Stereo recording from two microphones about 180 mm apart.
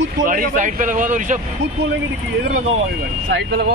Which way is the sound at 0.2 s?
50° right (ahead or behind).